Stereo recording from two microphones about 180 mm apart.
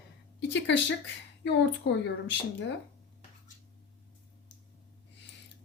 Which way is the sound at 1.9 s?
80° left.